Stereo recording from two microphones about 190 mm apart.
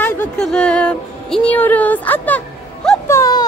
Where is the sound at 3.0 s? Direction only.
15° left (ahead or behind).